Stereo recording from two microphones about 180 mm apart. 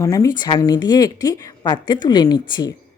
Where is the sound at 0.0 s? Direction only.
20° left (ahead or behind).